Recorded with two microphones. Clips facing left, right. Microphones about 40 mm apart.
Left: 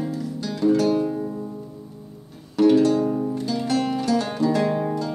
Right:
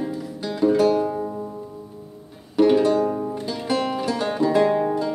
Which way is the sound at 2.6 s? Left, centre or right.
Centre.